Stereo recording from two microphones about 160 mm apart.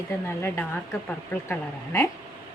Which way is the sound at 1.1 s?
15° left (ahead or behind).